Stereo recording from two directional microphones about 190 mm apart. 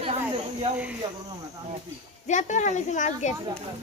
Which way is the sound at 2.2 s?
40° left (ahead or behind).